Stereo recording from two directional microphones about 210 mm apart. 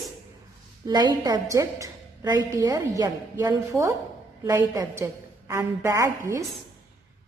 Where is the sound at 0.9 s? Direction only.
20° right (ahead or behind).